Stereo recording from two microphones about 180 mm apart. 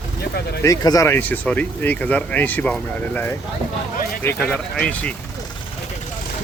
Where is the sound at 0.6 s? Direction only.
20° left (ahead or behind).